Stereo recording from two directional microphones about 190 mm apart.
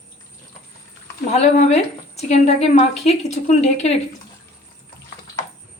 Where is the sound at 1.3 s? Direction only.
35° left (ahead or behind).